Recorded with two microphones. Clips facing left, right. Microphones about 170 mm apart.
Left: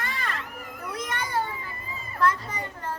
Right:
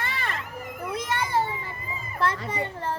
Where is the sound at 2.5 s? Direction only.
30° right (ahead or behind).